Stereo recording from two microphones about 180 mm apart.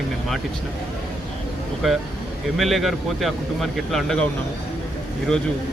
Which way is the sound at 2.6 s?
Centre (ahead or behind).